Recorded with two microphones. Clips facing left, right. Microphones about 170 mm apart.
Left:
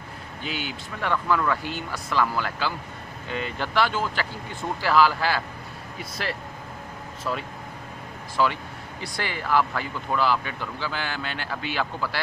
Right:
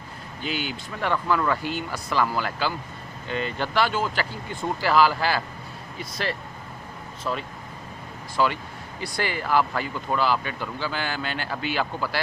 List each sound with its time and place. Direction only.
0.4 s speech: centre (ahead or behind)